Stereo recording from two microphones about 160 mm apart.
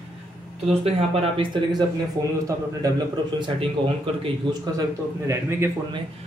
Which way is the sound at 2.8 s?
25° right (ahead or behind).